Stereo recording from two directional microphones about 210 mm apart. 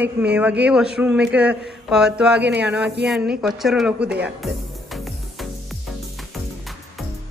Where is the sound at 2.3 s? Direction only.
55° right (ahead or behind).